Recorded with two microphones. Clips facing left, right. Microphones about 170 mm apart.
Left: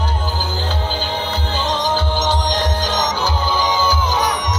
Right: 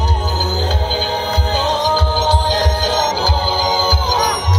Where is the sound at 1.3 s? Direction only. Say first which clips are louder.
Right 5 dB; 40° right (ahead or behind).